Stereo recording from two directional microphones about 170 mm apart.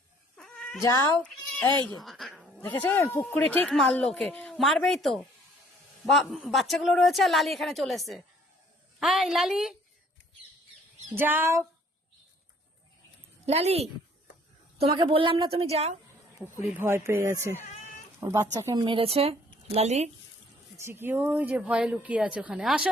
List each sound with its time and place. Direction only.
0.3 s cat: 5° left (ahead or behind)
0.8 s speech: 20° left (ahead or behind)
1.2 s bleat: 10° left (ahead or behind)
2.0 s cat: centre (ahead or behind)
2.6 s a man's voice: 10° left (ahead or behind)
11.1 s speech: 10° right (ahead or behind)
13.4 s a woman's voice: 40° right (ahead or behind)
16.6 s a woman's voice: 15° right (ahead or behind); by 20.1 s 40° right (ahead or behind)
20.7 s speech: 15° right (ahead or behind)